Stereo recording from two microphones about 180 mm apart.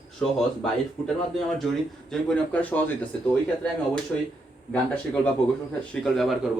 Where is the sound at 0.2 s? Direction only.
Centre (ahead or behind).